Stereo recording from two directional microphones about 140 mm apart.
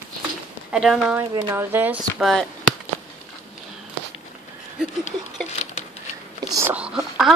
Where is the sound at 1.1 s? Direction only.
15° right (ahead or behind).